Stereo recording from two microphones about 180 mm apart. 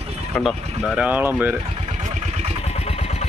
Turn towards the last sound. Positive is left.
turn(degrees=35)  # may be behind; listen again after turning